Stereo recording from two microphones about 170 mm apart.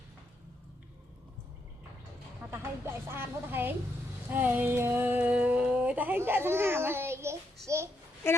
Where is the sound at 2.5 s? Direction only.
15° right (ahead or behind).